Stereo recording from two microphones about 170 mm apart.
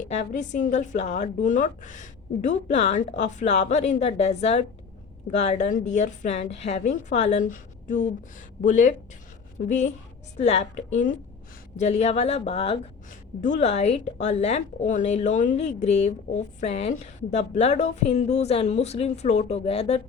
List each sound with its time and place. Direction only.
0.1 s a woman's voice: 45° left (ahead or behind)
13.4 s a woman's voice: 45° left (ahead or behind)